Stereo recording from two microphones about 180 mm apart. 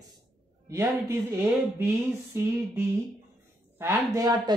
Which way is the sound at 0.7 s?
15° right (ahead or behind).